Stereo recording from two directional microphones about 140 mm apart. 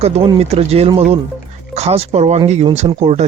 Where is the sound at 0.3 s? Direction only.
45° right (ahead or behind).